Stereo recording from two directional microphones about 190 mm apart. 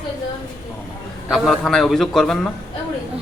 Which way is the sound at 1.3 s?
Centre (ahead or behind).